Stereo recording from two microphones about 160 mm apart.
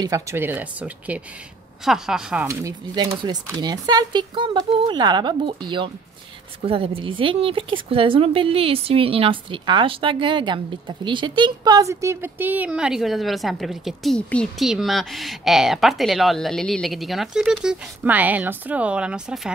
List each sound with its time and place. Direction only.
0.0 s speech: 20° right (ahead or behind); by 2.4 s 5° right (ahead or behind)
2.4 s speech: 20° right (ahead or behind)
3.0 s speech: 35° right (ahead or behind); by 19.5 s 5° right (ahead or behind)